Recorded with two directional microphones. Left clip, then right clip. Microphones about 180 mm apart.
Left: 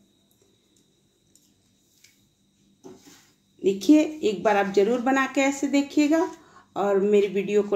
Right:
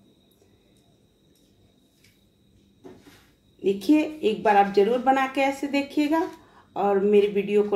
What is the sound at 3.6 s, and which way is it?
Speech, 40° left (ahead or behind).